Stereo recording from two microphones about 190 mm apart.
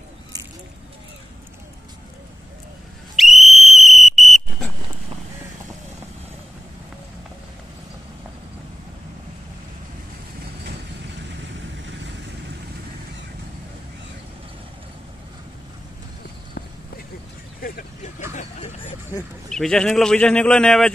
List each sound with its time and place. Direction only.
3.2 s whistle: centre (ahead or behind)
17.6 s vehicle: 50° left (ahead or behind)
18.3 s a sound: 40° left (ahead or behind)
19.5 s a man's voice: 5° left (ahead or behind)